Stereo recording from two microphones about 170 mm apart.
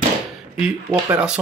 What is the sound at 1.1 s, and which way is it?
Speech, 5° right (ahead or behind).